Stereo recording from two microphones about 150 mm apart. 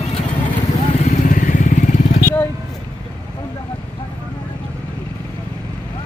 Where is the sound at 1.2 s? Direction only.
60° left (ahead or behind).